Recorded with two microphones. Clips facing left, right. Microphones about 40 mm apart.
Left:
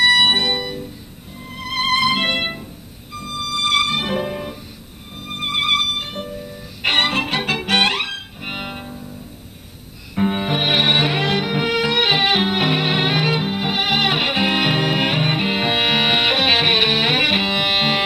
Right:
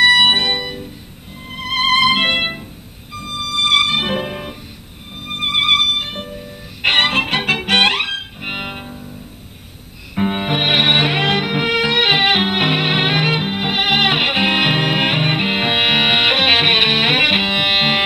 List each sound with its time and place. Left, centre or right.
0.0 s music: right
10.1 s music: right